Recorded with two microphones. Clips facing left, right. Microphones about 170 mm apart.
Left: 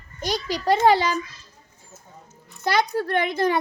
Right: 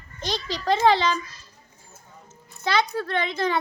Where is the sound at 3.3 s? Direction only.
15° left (ahead or behind).